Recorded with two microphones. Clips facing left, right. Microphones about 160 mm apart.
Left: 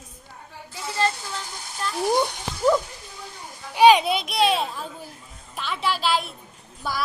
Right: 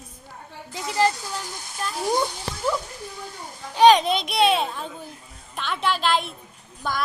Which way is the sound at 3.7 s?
10° left (ahead or behind).